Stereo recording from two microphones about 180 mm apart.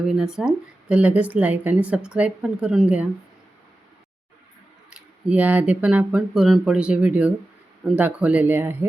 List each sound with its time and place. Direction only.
0.1 s a woman's voice: 5° right (ahead or behind)
4.9 s speech: 5° right (ahead or behind)